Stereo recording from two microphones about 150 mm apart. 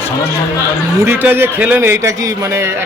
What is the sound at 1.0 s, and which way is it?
A man's voice, 15° right (ahead or behind).